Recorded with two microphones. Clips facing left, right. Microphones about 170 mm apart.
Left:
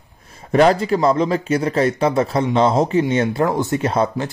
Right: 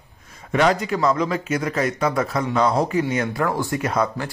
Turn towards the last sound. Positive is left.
turn(degrees=30)  # may be behind; listen again after turning